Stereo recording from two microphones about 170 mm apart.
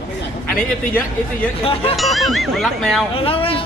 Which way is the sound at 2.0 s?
Centre (ahead or behind).